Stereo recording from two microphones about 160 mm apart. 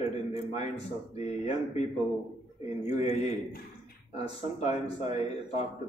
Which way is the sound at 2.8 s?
45° left (ahead or behind).